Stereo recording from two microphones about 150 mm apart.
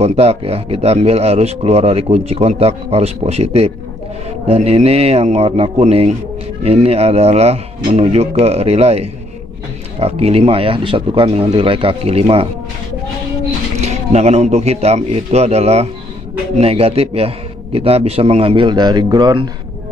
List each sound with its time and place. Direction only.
0.0 s speech: 45° right (ahead or behind)
13.7 s speech: 45° right (ahead or behind); by 19.5 s 30° right (ahead or behind)